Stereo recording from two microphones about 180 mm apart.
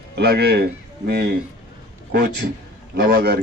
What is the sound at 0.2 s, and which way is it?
Speech, 65° right (ahead or behind).